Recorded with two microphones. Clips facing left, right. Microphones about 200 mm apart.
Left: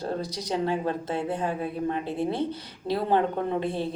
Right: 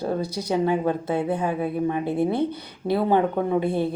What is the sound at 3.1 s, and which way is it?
Speech, 15° right (ahead or behind).